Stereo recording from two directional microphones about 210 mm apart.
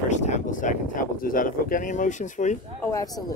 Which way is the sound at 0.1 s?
35° left (ahead or behind).